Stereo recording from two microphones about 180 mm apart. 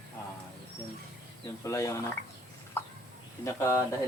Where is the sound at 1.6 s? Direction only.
15° left (ahead or behind).